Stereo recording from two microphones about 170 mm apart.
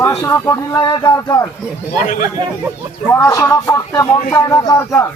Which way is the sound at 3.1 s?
20° left (ahead or behind).